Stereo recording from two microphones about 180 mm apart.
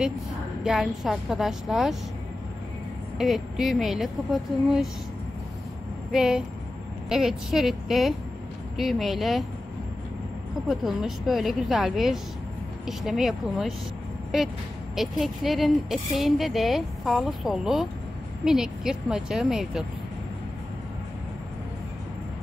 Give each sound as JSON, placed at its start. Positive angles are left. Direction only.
{"t": 0.7, "sound": "speech", "side_deg": 0}
{"t": 3.2, "sound": "speech", "side_deg": 0}
{"t": 6.1, "sound": "speech", "side_deg": -5}
{"t": 10.7, "sound": "speech", "side_deg": 0}